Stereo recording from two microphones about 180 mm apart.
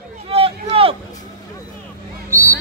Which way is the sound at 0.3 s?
30° right (ahead or behind).